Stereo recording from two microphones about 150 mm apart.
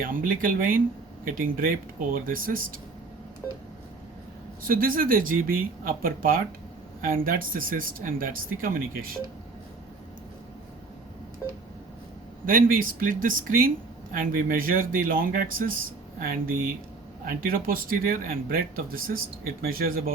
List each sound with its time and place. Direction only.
0.0 s speech: 70° right (ahead or behind)
4.6 s speech: 70° right (ahead or behind)
12.5 s speech: 70° right (ahead or behind)